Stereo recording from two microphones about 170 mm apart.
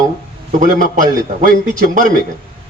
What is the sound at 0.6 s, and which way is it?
A man's voice, 50° right (ahead or behind).